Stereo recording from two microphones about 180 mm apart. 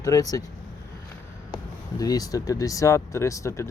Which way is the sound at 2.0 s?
20° left (ahead or behind).